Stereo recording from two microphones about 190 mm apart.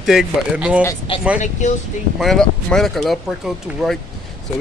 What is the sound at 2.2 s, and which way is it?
Speech, centre (ahead or behind).